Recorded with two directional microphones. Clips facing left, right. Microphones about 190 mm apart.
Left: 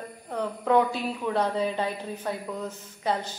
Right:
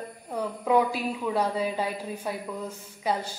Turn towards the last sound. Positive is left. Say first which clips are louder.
# even
turn(degrees=-10)  # may be behind; listen again after turning